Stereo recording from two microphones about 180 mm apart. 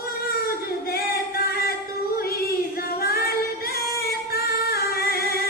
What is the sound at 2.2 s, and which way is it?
Female singing, 55° left (ahead or behind).